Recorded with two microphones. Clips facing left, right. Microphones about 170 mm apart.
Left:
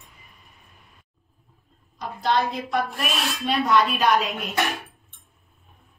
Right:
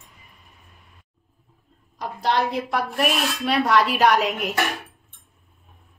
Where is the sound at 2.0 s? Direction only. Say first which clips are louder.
Right 1 dB; 70° right (ahead or behind).